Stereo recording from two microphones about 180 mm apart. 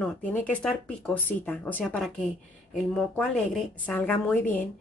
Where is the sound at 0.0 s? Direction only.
10° left (ahead or behind).